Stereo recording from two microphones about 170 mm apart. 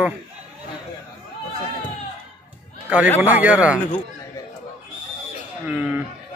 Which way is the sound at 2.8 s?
10° right (ahead or behind).